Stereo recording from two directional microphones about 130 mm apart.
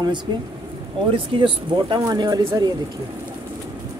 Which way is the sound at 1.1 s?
40° right (ahead or behind).